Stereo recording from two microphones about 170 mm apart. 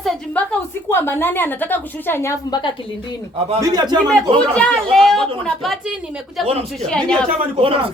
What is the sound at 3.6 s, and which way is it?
Speech, 25° right (ahead or behind).